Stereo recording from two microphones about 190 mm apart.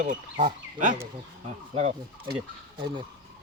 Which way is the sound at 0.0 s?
45° right (ahead or behind).